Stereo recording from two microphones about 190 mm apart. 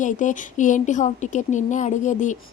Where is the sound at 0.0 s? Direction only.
40° left (ahead or behind).